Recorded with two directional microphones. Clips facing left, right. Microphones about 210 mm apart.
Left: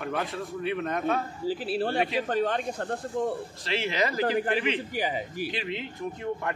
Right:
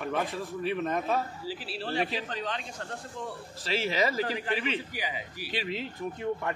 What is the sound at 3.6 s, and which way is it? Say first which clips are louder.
Speech: even; centre (ahead or behind).